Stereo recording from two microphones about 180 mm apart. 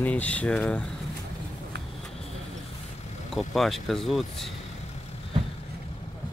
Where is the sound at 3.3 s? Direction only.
Centre (ahead or behind).